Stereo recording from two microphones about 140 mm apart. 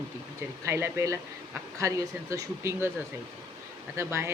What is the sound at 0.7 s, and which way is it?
Speech, 15° right (ahead or behind).